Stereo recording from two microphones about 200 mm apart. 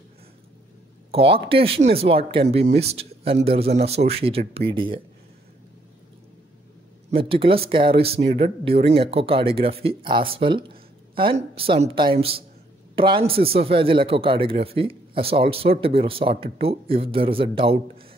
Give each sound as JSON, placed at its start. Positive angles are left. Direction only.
{"t": 1.1, "sound": "a man's voice", "side_deg": -25}
{"t": 7.1, "sound": "a man's voice", "side_deg": -25}